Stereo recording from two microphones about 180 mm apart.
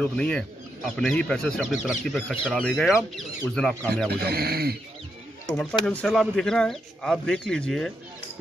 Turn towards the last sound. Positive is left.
turn(degrees=5)  # may be behind; listen again after turning